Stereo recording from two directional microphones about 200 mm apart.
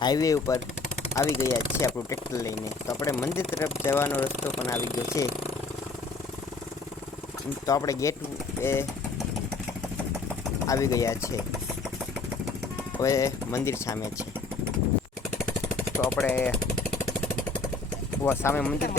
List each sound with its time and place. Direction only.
0.0 s speech: 20° left (ahead or behind)
7.7 s speech: 15° left (ahead or behind)
10.7 s speech: 15° left (ahead or behind)
13.0 s speech: 15° left (ahead or behind)
16.0 s speech: 10° left (ahead or behind)
18.2 s speech: 10° left (ahead or behind)